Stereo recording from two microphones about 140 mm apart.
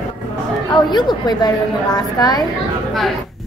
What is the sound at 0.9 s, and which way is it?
A woman's voice, 30° left (ahead or behind).